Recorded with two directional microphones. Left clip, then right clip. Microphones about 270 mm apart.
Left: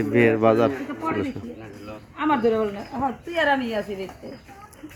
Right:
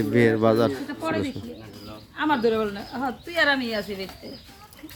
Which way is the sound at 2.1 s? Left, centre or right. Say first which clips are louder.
Left 1 dB; centre.